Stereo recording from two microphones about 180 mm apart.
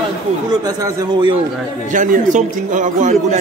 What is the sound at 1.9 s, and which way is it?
A man's voice, 45° right (ahead or behind).